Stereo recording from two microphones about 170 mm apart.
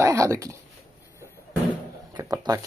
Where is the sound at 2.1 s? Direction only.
20° right (ahead or behind).